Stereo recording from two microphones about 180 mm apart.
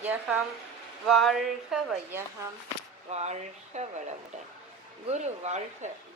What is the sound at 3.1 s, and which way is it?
Speech, 40° right (ahead or behind).